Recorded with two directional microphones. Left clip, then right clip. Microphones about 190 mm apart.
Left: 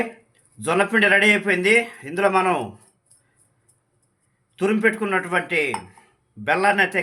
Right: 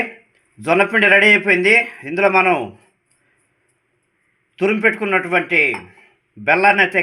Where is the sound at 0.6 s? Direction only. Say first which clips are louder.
Right 4 dB; 20° right (ahead or behind).